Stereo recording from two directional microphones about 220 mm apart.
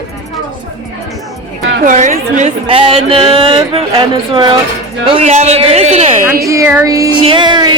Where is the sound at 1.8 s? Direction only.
35° right (ahead or behind).